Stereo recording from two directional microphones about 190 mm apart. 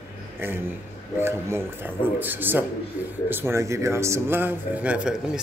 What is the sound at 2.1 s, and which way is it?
Speech, 10° right (ahead or behind).